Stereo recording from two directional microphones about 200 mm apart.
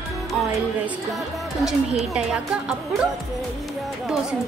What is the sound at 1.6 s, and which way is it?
Speech, centre (ahead or behind).